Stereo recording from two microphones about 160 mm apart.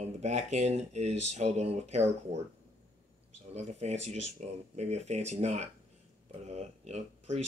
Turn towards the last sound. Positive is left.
turn(degrees=-45)  # may be behind; listen again after turning